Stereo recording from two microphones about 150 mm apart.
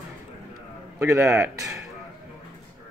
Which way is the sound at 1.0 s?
20° right (ahead or behind).